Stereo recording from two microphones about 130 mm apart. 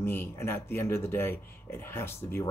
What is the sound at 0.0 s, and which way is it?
Speech, 15° left (ahead or behind).